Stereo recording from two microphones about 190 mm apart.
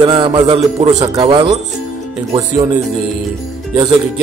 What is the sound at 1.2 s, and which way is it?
Speech, 30° right (ahead or behind).